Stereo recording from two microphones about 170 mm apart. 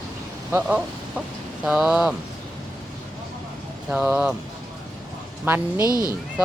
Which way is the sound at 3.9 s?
10° right (ahead or behind).